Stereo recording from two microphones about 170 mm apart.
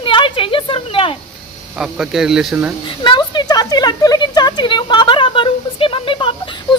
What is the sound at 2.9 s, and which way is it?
Speech, 30° left (ahead or behind).